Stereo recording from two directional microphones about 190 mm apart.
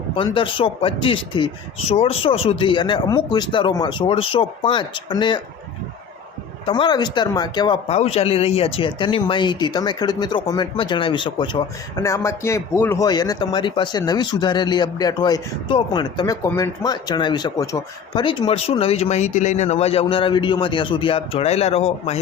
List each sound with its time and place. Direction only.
0.2 s a man's voice: 25° left (ahead or behind)
6.7 s a man's voice: 25° left (ahead or behind)
7.9 s a man's voice: 35° left (ahead or behind)